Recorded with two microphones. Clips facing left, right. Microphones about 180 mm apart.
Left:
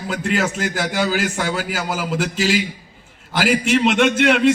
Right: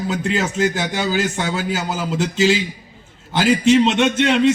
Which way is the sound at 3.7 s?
25° right (ahead or behind).